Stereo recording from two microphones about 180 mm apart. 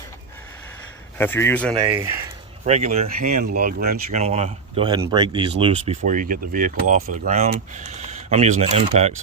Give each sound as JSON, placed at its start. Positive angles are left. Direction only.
{"t": 1.2, "sound": "a man's voice", "side_deg": 10}
{"t": 2.6, "sound": "speech", "side_deg": -40}
{"t": 3.2, "sound": "speech", "side_deg": -55}
{"t": 6.1, "sound": "speech", "side_deg": -50}